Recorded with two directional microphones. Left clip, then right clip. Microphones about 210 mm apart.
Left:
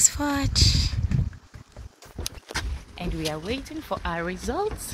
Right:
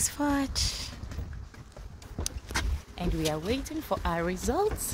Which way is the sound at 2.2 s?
5° right (ahead or behind).